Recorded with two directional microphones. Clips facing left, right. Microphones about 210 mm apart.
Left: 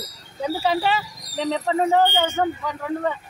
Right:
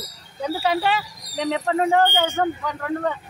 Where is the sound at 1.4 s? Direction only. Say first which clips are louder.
Even; 5° right (ahead or behind).